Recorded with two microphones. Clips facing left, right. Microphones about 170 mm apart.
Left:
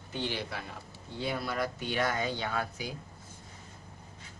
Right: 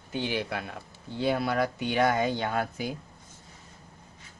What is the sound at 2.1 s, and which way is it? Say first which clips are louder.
Speech: right 5 dB; 50° right (ahead or behind).